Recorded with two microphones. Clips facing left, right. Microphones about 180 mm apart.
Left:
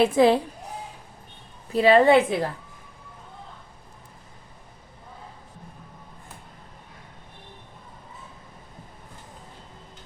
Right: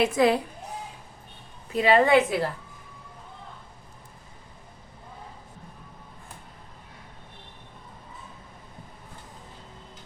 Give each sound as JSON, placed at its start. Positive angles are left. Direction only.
{"t": 0.0, "sound": "a woman's voice", "side_deg": 30}
{"t": 1.7, "sound": "a woman's voice", "side_deg": 35}